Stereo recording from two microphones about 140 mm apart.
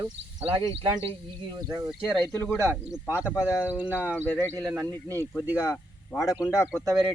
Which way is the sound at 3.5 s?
10° right (ahead or behind).